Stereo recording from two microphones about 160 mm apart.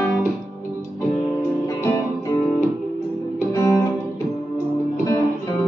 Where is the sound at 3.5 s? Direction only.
20° left (ahead or behind).